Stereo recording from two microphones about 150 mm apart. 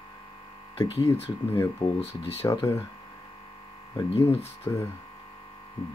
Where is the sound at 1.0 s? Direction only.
40° left (ahead or behind).